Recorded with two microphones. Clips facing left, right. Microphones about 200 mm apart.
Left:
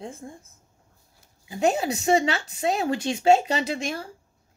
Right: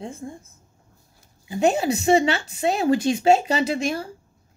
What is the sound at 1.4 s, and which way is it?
Speech, 30° right (ahead or behind).